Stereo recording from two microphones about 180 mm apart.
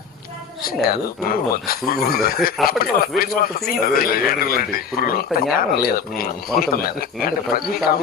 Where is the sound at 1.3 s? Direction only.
55° left (ahead or behind).